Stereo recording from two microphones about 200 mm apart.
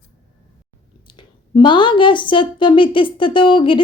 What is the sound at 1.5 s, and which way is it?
A woman's voice, 25° left (ahead or behind).